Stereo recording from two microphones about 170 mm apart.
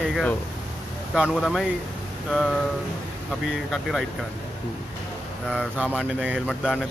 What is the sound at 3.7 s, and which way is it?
Speech, centre (ahead or behind).